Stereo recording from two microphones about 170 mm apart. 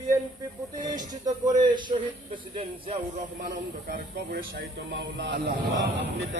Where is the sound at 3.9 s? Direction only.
65° right (ahead or behind); by 5.5 s 90° right.